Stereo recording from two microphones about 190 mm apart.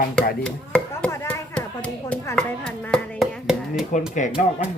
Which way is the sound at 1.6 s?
5° left (ahead or behind).